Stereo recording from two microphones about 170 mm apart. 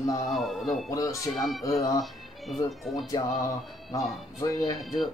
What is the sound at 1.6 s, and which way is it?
Speech, 20° left (ahead or behind).